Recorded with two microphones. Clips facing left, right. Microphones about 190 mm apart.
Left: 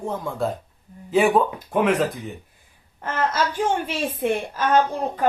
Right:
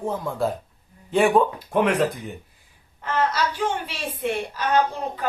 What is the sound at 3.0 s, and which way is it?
A woman's voice, 50° left (ahead or behind).